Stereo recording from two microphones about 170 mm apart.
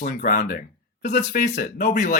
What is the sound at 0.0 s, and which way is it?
Speech, 55° left (ahead or behind).